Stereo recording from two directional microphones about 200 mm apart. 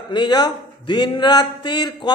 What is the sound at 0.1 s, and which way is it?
A man's voice, 20° left (ahead or behind).